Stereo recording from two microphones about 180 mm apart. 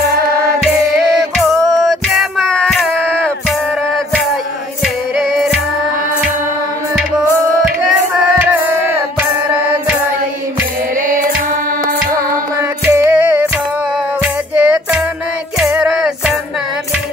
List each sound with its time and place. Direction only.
1.5 s music: centre (ahead or behind)
7.9 s a sound: 10° right (ahead or behind)
12.8 s music: 15° right (ahead or behind)